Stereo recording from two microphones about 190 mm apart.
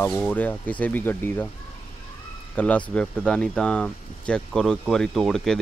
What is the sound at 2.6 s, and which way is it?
Speech, 5° left (ahead or behind).